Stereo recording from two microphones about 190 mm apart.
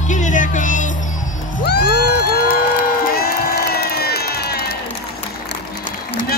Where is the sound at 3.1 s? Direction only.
55° left (ahead or behind).